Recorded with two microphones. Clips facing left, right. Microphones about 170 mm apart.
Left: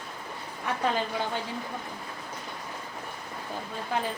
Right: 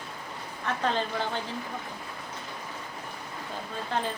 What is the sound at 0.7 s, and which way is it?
Speech, 10° left (ahead or behind).